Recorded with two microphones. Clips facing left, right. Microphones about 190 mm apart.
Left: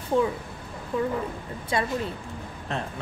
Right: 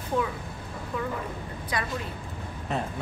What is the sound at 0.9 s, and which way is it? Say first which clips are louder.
Speech: left 5 dB; 30° left (ahead or behind).